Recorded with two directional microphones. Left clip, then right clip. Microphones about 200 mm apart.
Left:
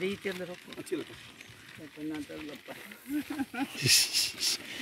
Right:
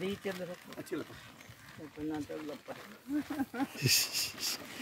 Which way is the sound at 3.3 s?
35° left (ahead or behind).